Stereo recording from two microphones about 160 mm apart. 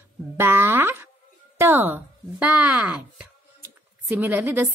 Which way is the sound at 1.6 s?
15° right (ahead or behind).